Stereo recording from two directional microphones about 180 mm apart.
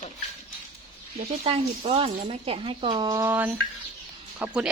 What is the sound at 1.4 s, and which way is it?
Speech, 35° right (ahead or behind).